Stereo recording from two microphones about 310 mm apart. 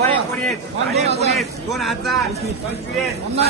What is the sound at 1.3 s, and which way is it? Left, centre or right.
Speech, centre.